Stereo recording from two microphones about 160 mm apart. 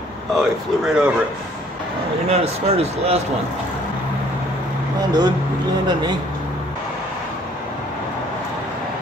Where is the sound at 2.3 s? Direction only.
40° right (ahead or behind).